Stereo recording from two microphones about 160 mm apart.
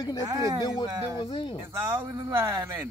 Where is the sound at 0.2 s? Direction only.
20° right (ahead or behind).